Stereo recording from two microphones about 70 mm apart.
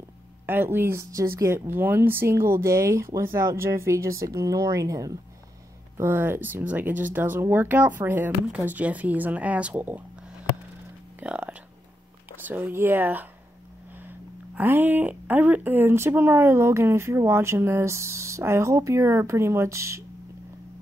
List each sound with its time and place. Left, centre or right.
0.5 s speech: right
1.1 s speech: right
5.9 s speech: right
11.2 s speech: centre
14.6 s speech: right